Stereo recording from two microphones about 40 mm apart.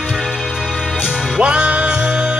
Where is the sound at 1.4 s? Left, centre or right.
Right.